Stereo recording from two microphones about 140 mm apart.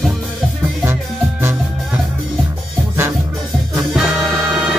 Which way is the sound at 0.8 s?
15° right (ahead or behind).